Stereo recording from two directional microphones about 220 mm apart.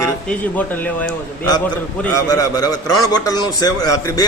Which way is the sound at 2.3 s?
15° left (ahead or behind).